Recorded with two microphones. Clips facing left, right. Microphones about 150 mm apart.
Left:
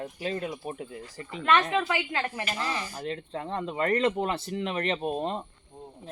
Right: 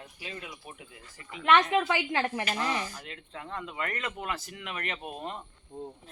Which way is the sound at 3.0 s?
35° left (ahead or behind).